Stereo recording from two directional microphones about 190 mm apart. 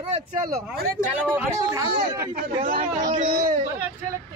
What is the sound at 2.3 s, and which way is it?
Speech, 50° right (ahead or behind).